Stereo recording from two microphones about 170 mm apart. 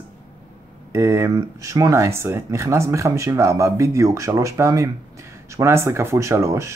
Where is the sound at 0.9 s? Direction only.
15° right (ahead or behind).